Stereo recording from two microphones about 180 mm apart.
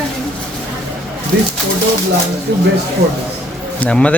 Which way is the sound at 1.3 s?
65° right (ahead or behind).